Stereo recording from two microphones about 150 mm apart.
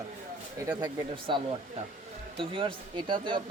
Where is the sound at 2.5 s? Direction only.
35° right (ahead or behind).